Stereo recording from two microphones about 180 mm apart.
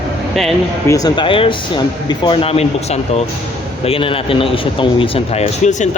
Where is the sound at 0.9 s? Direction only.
20° left (ahead or behind).